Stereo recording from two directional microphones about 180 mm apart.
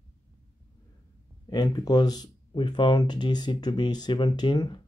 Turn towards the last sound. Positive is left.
turn(degrees=25)  # may be behind; listen again after turning